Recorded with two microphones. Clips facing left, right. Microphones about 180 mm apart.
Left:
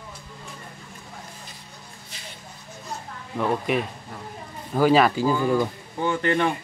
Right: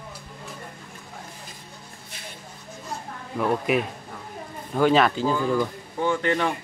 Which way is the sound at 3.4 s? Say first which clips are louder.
Right 1 dB; centre (ahead or behind).